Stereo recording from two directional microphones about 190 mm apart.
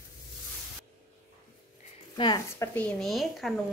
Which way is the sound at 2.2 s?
25° left (ahead or behind).